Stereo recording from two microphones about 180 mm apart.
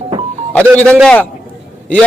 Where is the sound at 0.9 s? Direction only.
5° left (ahead or behind).